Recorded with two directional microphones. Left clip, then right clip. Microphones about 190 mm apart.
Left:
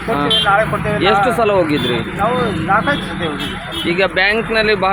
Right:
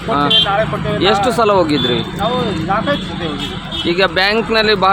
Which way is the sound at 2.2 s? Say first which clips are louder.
Left 3 dB; 5° right (ahead or behind).